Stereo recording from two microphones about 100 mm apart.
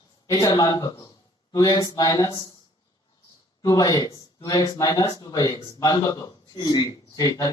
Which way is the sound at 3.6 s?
35° left (ahead or behind).